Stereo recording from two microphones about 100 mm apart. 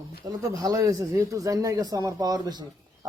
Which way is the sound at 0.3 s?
40° right (ahead or behind).